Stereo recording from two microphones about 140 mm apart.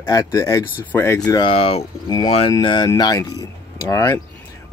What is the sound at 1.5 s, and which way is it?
Speech, 45° left (ahead or behind).